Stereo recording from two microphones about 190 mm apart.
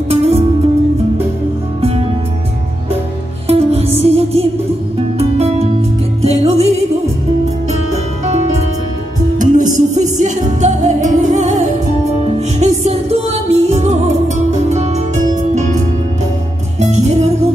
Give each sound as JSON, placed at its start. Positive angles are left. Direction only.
{"t": 0.1, "sound": "music", "side_deg": -30}
{"t": 1.8, "sound": "music", "side_deg": -30}
{"t": 3.4, "sound": "music", "side_deg": -30}
{"t": 6.2, "sound": "music", "side_deg": -35}
{"t": 9.4, "sound": "music", "side_deg": -40}
{"t": 17.0, "sound": "music", "side_deg": -35}